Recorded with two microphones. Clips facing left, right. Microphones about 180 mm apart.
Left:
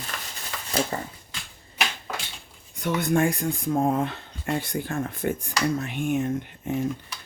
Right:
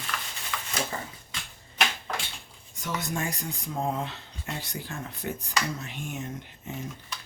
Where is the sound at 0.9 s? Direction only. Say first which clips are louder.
Left 5 dB; 40° left (ahead or behind).